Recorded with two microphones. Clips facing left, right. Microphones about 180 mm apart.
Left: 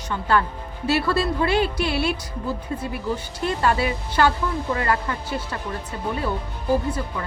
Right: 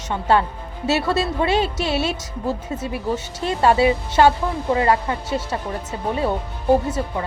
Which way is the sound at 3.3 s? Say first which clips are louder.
Right 5 dB; 25° right (ahead or behind).